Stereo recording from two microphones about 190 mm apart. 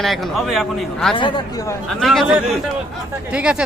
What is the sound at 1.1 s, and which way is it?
Speech, 25° left (ahead or behind).